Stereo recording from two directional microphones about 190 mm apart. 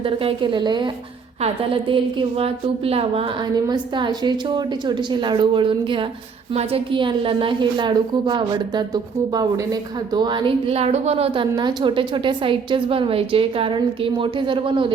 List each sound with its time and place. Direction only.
0.0 s a woman's voice: 30° right (ahead or behind)